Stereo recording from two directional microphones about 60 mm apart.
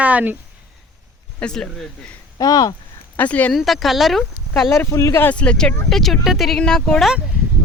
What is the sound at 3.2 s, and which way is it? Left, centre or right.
Speech, left.